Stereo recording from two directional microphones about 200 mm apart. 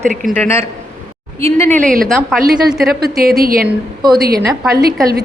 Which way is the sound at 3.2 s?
50° right (ahead or behind).